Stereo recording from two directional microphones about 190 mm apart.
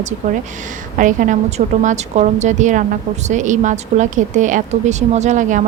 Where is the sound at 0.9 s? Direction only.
45° right (ahead or behind).